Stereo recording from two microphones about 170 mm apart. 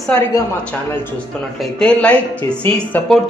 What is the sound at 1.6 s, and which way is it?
A man's voice, 5° left (ahead or behind).